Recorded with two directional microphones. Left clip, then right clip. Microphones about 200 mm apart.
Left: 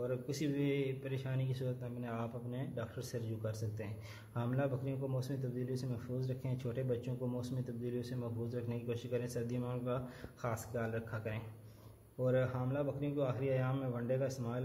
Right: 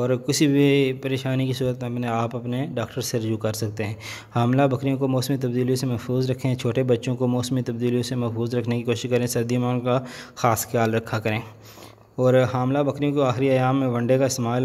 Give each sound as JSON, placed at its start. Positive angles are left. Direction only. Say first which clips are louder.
{"t": 0.0, "sound": "speech", "louder": "right 17 dB", "side_deg": -50}